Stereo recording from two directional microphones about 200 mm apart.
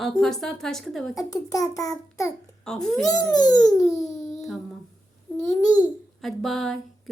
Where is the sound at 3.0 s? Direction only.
20° left (ahead or behind).